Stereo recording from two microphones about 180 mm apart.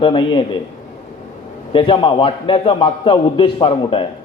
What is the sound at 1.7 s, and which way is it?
A man's voice, 30° left (ahead or behind).